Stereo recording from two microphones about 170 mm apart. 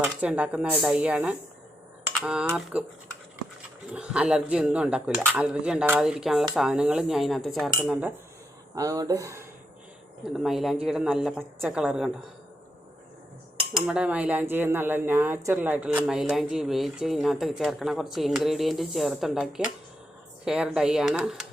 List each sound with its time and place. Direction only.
0.2 s speech: 5° right (ahead or behind)
3.9 s speech: 5° right (ahead or behind)
8.7 s speech: 20° right (ahead or behind)
10.3 s speech: centre (ahead or behind)
13.7 s speech: 5° right (ahead or behind)